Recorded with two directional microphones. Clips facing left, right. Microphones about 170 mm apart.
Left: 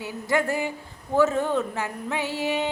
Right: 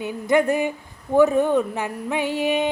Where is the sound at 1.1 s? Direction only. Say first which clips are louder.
Right 5 dB; 15° right (ahead or behind).